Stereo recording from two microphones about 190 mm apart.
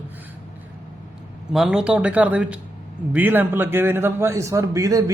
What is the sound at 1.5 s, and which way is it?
A man's voice, 5° right (ahead or behind).